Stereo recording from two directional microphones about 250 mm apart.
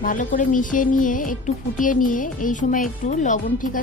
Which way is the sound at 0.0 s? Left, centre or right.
Left.